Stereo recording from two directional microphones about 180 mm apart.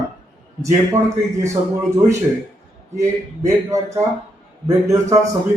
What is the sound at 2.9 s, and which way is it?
Speech, 15° right (ahead or behind).